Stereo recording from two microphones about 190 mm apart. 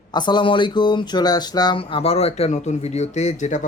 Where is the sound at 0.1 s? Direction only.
25° left (ahead or behind).